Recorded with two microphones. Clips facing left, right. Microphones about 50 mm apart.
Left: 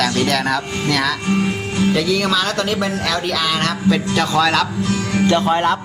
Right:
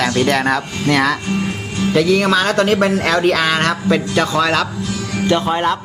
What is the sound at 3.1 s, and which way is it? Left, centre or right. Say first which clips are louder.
Speech: right 5 dB; right.